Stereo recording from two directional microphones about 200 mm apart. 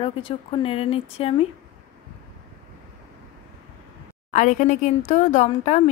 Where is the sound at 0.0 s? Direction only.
25° left (ahead or behind).